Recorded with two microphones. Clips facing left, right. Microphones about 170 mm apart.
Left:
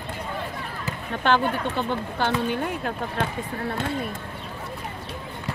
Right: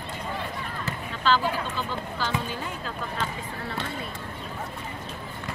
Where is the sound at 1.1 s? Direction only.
60° left (ahead or behind).